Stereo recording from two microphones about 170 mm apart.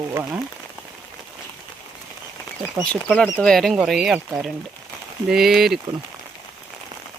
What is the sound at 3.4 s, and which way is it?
Speech, 5° left (ahead or behind).